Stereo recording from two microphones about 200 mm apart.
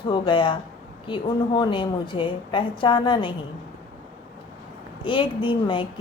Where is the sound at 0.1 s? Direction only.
25° left (ahead or behind).